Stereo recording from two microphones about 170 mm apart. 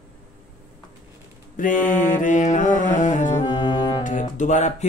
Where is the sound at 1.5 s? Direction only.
50° left (ahead or behind).